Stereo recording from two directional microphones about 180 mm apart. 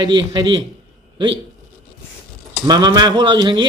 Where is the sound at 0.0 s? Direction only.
25° right (ahead or behind).